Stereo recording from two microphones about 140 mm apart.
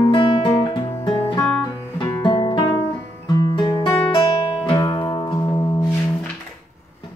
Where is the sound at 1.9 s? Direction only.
35° left (ahead or behind).